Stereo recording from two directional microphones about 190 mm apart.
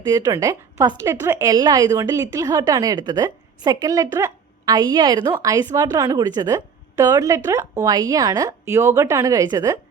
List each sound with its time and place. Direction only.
0.0 s a woman's voice: 15° right (ahead or behind)